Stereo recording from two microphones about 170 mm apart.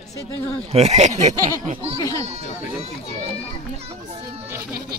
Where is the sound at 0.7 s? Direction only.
40° right (ahead or behind).